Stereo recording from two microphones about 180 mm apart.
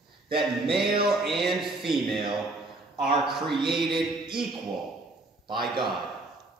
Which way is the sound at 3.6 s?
25° right (ahead or behind).